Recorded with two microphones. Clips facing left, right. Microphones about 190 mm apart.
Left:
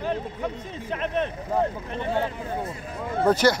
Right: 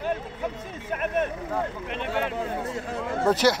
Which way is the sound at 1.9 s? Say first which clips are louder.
Left 2 dB; 75° right (ahead or behind).